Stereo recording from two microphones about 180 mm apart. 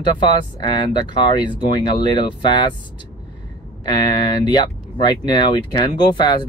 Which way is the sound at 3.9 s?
25° left (ahead or behind).